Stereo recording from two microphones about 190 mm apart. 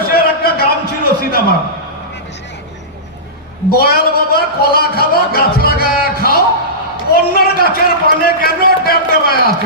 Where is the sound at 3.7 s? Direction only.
55° left (ahead or behind).